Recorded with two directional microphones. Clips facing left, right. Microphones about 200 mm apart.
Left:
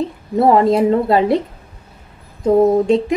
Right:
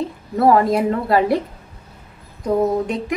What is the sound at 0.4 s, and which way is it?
Speech, 25° left (ahead or behind).